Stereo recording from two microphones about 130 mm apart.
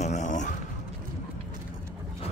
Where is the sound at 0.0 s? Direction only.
65° left (ahead or behind).